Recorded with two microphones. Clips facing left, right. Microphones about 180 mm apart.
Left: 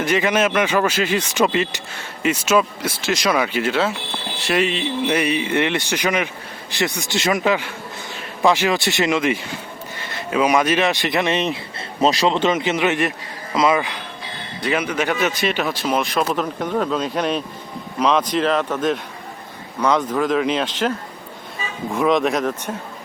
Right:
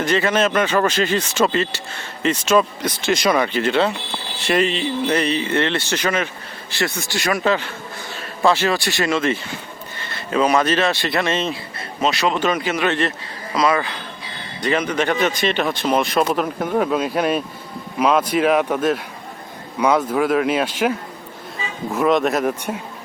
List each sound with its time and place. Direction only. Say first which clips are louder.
0.0 s speech: even; 10° left (ahead or behind)
12.0 s speech: left 2 dB; 35° left (ahead or behind)
14.6 s speech: right 1 dB; 5° left (ahead or behind); by 20.9 s 10° right (ahead or behind)
21.9 s speech: right 1 dB; centre (ahead or behind)